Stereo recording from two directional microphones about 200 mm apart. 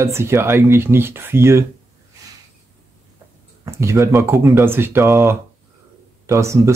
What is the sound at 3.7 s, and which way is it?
Speech, 15° right (ahead or behind).